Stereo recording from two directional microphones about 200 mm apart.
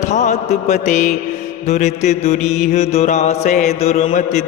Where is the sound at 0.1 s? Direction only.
35° left (ahead or behind).